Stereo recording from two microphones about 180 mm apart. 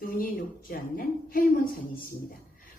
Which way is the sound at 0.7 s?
60° left (ahead or behind).